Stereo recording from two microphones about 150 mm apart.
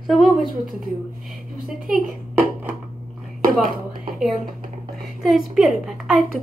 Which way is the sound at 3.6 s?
75° right (ahead or behind).